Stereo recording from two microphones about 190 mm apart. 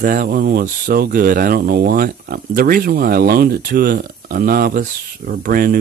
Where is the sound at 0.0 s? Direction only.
45° right (ahead or behind).